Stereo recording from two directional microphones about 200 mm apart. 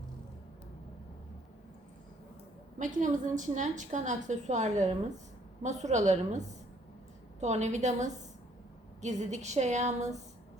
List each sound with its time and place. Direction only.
2.7 s a woman's voice: 40° right (ahead or behind)
7.4 s a woman's voice: 35° right (ahead or behind)